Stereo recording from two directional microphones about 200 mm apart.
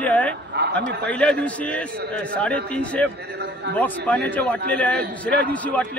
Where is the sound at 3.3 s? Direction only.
55° right (ahead or behind).